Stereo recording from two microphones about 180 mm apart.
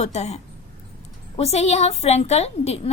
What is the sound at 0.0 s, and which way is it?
Speech, 40° left (ahead or behind).